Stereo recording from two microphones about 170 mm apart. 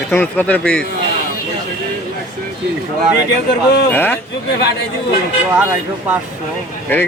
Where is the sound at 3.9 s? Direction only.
10° left (ahead or behind).